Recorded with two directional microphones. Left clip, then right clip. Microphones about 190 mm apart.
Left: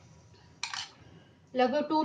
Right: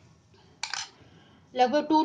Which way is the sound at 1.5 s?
45° right (ahead or behind).